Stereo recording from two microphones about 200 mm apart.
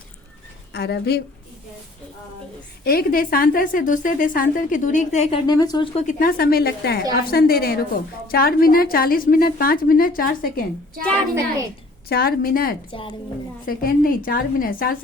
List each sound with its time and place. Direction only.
0.7 s speech: 55° left (ahead or behind)
2.8 s a woman's voice: 50° left (ahead or behind)
5.5 s a woman's voice: 20° left (ahead or behind)
6.1 s a woman's voice: 45° left (ahead or behind)
12.0 s a woman's voice: 50° left (ahead or behind)
12.9 s a woman's voice: 25° left (ahead or behind)
13.7 s a woman's voice: 45° left (ahead or behind)